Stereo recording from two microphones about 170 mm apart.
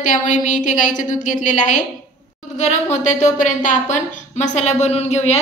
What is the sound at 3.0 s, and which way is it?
A woman's voice, 45° left (ahead or behind).